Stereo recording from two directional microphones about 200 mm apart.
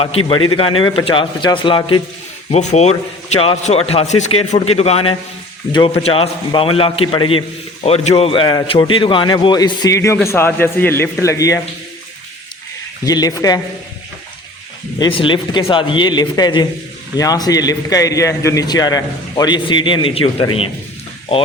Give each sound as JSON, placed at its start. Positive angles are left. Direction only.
{"t": 0.8, "sound": "a man's voice", "side_deg": 25}
{"t": 13.1, "sound": "a man's voice", "side_deg": 20}
{"t": 14.9, "sound": "a man's voice", "side_deg": 20}